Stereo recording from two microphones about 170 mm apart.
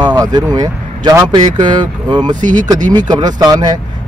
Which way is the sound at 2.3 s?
50° right (ahead or behind).